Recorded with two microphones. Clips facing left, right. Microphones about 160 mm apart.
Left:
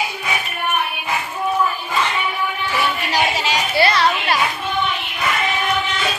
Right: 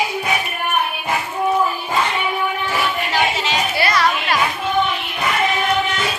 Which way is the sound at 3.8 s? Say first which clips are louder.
Left 3 dB; 30° left (ahead or behind).